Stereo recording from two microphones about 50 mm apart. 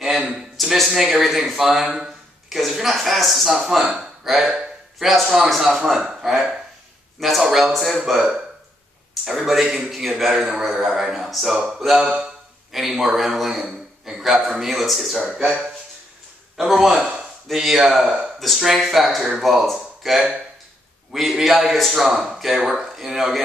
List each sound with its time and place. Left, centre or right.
0.3 s a sound: centre
0.9 s a man's voice: centre
3.8 s a sound: centre
4.9 s a man's voice: centre
17.0 s speech: centre
17.5 s a man's voice: centre